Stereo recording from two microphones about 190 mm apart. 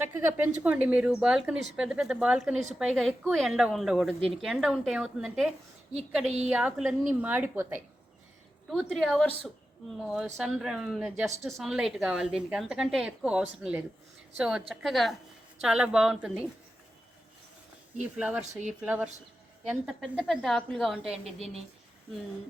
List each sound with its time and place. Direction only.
0.3 s speech: 5° right (ahead or behind)
6.2 s a woman's voice: 35° right (ahead or behind)
6.5 s a woman's voice: 5° right (ahead or behind)
8.7 s speech: centre (ahead or behind)
18.2 s a woman's voice: 5° right (ahead or behind)
21.3 s a woman's voice: 35° right (ahead or behind)